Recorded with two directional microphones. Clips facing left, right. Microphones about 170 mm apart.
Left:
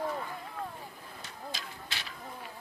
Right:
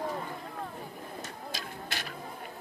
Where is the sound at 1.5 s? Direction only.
45° right (ahead or behind).